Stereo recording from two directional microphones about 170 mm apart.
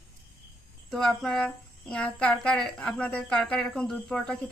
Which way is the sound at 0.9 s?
Centre (ahead or behind).